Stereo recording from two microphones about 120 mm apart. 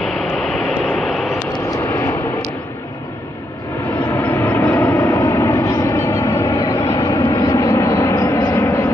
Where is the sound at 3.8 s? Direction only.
20° left (ahead or behind).